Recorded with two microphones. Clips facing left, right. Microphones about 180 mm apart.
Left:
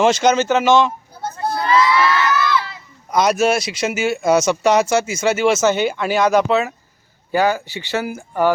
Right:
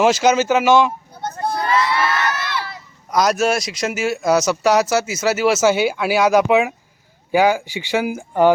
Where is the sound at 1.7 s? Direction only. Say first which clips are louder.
Left 5 dB; 55° right (ahead or behind).